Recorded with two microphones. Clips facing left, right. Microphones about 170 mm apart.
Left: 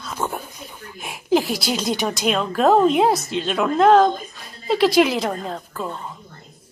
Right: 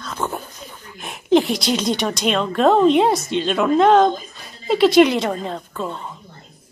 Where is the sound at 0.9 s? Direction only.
5° left (ahead or behind).